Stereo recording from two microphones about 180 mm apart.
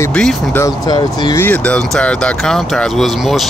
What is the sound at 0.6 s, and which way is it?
Speech, 20° left (ahead or behind).